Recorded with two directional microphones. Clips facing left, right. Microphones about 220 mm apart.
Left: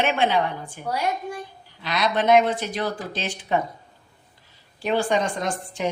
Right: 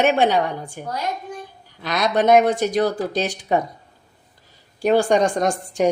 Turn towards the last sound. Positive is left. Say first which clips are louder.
# right 7 dB
turn(degrees=-45)  # may be behind; listen again after turning